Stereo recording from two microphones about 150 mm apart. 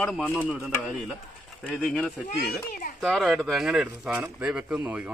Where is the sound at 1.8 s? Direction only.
10° left (ahead or behind).